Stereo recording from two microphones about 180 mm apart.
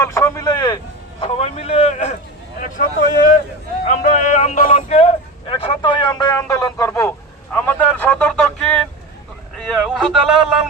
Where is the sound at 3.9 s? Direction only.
45° left (ahead or behind).